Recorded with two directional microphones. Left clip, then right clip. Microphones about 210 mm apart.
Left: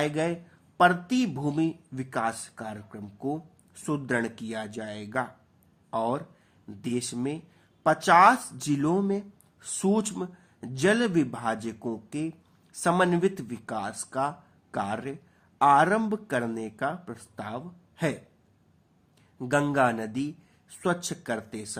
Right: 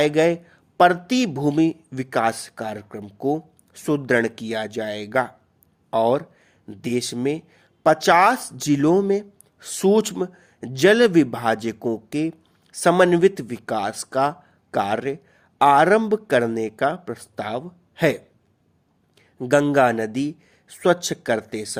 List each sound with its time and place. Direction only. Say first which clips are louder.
0.0 s speech: right 10 dB; 45° right (ahead or behind)
19.4 s speech: right 7 dB; 35° right (ahead or behind)